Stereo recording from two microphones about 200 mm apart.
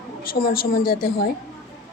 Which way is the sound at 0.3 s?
45° left (ahead or behind).